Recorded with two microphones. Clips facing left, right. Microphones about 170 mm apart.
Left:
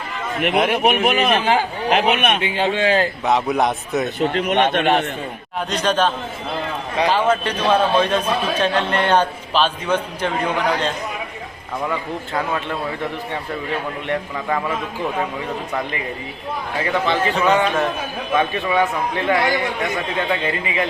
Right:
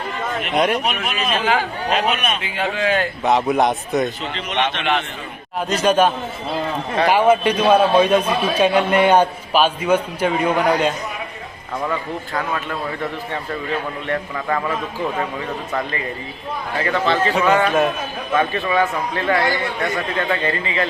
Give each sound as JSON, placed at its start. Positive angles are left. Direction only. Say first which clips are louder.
{"t": 0.7, "sound": "a man's voice", "louder": "left 5 dB", "side_deg": 55}
{"t": 2.6, "sound": "speech", "louder": "left 1 dB", "side_deg": 30}
{"t": 3.2, "sound": "a man's voice", "louder": "right 4 dB", "side_deg": 0}
{"t": 4.2, "sound": "a man's voice", "louder": "left 5 dB", "side_deg": 50}
{"t": 5.5, "sound": "a man's voice", "louder": "right 3 dB", "side_deg": -5}
{"t": 12.3, "sound": "speech", "louder": "left 2 dB", "side_deg": 25}
{"t": 14.1, "sound": "a man's voice", "louder": "even", "side_deg": 10}
{"t": 16.8, "sound": "a man's voice", "louder": "right 1 dB", "side_deg": 15}
{"t": 17.7, "sound": "a man's voice", "louder": "right 3 dB", "side_deg": -10}
{"t": 18.3, "sound": "a man's voice", "louder": "even", "side_deg": 15}